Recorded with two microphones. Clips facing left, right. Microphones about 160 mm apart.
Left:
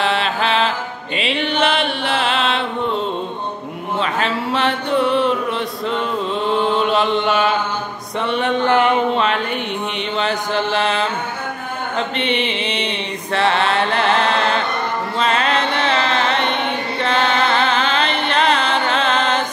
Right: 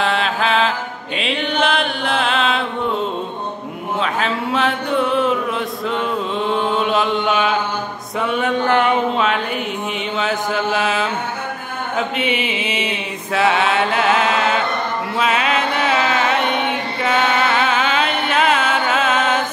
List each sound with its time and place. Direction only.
0.0 s mantra: centre (ahead or behind)
4.0 s speech: centre (ahead or behind)
6.4 s mantra: centre (ahead or behind)
8.3 s a sound: 5° right (ahead or behind)
10.1 s mantra: 5° right (ahead or behind)
12.2 s mantra: 5° right (ahead or behind)
15.1 s chant: 5° right (ahead or behind)